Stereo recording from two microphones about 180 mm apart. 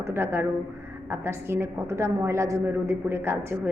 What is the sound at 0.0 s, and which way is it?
A woman's voice, 10° right (ahead or behind).